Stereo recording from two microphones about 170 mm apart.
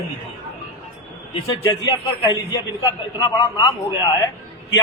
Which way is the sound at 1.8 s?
20° left (ahead or behind).